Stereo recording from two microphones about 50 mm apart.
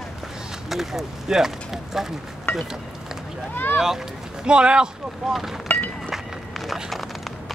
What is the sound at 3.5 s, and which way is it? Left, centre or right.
Boat, left.